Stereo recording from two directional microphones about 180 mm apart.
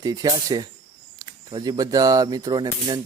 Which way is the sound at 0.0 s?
20° right (ahead or behind).